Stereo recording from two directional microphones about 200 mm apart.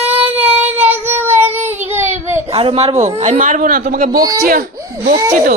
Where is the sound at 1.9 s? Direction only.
10° right (ahead or behind).